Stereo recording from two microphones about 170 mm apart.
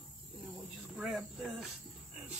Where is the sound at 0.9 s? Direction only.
Centre (ahead or behind).